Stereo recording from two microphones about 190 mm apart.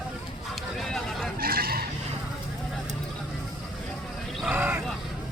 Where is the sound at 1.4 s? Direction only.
50° right (ahead or behind).